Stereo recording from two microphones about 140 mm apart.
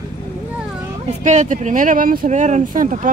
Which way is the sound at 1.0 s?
55° right (ahead or behind).